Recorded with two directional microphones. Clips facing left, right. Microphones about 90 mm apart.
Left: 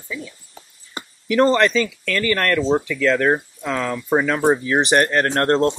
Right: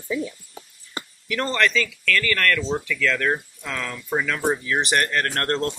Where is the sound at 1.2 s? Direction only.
25° left (ahead or behind).